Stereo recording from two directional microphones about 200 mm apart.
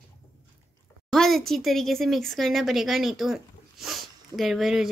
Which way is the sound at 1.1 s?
Centre (ahead or behind).